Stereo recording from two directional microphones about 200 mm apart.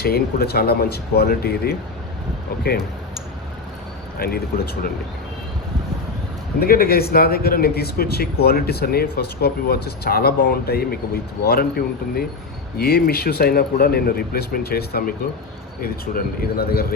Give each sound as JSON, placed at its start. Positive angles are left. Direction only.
{"t": 0.0, "sound": "speech", "side_deg": 50}
{"t": 4.2, "sound": "speech", "side_deg": 50}
{"t": 6.6, "sound": "speech", "side_deg": 50}
{"t": 12.8, "sound": "speech", "side_deg": 50}